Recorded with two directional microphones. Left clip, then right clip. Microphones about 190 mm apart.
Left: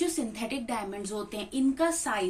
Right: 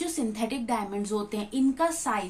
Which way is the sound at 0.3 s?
35° right (ahead or behind).